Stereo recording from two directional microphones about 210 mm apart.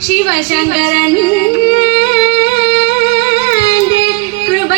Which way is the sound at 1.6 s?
50° left (ahead or behind).